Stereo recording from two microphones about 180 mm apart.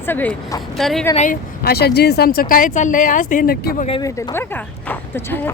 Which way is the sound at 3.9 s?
20° left (ahead or behind).